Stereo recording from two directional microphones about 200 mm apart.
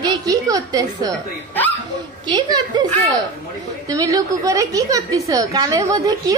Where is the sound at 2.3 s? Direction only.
20° right (ahead or behind).